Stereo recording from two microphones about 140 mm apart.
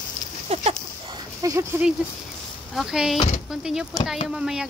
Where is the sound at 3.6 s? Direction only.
5° right (ahead or behind).